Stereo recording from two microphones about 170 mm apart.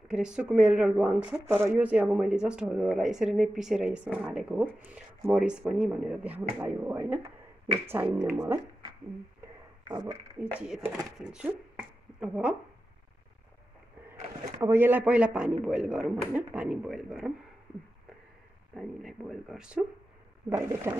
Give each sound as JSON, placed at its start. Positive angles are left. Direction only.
{"t": 0.1, "sound": "a man's voice", "side_deg": -5}
{"t": 9.8, "sound": "speech", "side_deg": -25}
{"t": 10.4, "sound": "a man's voice", "side_deg": -10}
{"t": 14.0, "sound": "a man's voice", "side_deg": -15}
{"t": 18.8, "sound": "speech", "side_deg": 0}
{"t": 20.4, "sound": "a man's voice", "side_deg": -15}